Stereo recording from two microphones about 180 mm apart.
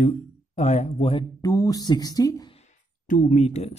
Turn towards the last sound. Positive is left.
turn(degrees=35)  # may be behind; listen again after turning